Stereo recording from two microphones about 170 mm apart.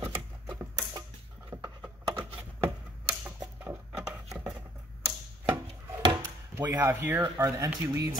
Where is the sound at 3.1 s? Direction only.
10° right (ahead or behind).